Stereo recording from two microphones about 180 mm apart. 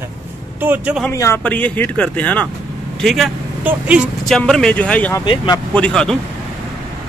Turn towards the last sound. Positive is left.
turn(degrees=5)  # may be behind; listen again after turning